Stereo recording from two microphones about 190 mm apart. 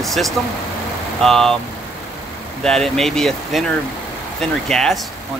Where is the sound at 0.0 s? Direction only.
Centre (ahead or behind).